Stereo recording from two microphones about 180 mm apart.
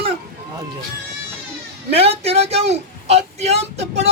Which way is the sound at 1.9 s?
35° right (ahead or behind).